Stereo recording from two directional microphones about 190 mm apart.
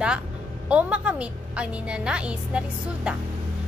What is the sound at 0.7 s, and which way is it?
A woman's voice, 5° right (ahead or behind).